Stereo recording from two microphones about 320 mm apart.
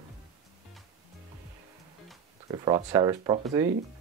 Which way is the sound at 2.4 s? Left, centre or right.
Centre.